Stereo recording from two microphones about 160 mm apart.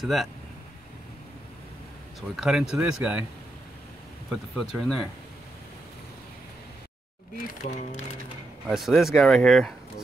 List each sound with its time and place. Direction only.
0.0 s speech: centre (ahead or behind)
2.3 s speech: centre (ahead or behind)
4.7 s speech: centre (ahead or behind)
7.3 s speech: 50° left (ahead or behind)
8.6 s speech: centre (ahead or behind)